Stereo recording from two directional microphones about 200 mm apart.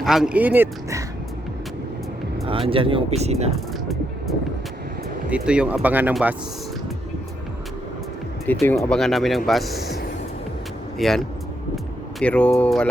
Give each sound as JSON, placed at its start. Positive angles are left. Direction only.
{"t": 0.0, "sound": "speech", "side_deg": 0}
{"t": 2.5, "sound": "speech", "side_deg": -25}
{"t": 5.3, "sound": "speech", "side_deg": -5}
{"t": 8.4, "sound": "speech", "side_deg": 5}
{"t": 10.9, "sound": "speech", "side_deg": 0}